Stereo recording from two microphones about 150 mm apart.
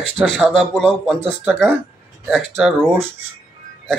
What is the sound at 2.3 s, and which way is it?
Speech, centre (ahead or behind).